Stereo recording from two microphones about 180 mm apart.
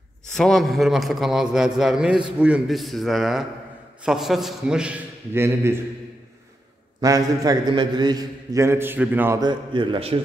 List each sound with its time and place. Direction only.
0.3 s a man's voice: centre (ahead or behind); by 5.8 s 15° right (ahead or behind)
7.0 s a man's voice: 20° right (ahead or behind)
9.4 s a man's voice: 25° right (ahead or behind)